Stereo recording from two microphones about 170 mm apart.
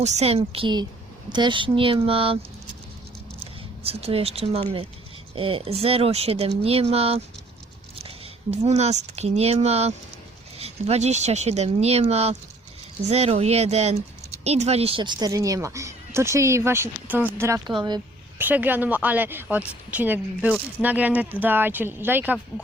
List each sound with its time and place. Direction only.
0.0 s speech: 35° right (ahead or behind)
3.8 s a woman's voice: 35° right (ahead or behind); by 17.6 s 15° right (ahead or behind)
17.7 s speech: 25° right (ahead or behind)
18.3 s a woman's voice: 10° right (ahead or behind)